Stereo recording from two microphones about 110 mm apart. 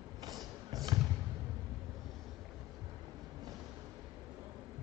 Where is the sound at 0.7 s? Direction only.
35° right (ahead or behind).